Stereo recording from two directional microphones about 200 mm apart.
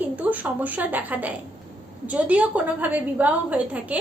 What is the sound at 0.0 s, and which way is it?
A woman's voice, 10° right (ahead or behind).